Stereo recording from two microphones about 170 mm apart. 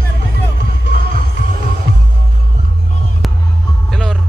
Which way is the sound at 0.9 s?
60° right (ahead or behind).